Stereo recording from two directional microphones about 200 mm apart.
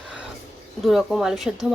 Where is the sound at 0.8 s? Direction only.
Centre (ahead or behind).